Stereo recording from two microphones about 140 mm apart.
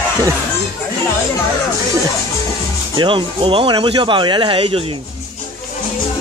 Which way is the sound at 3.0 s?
35° right (ahead or behind).